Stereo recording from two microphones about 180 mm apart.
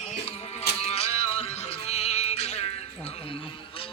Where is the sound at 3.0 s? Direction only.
30° left (ahead or behind).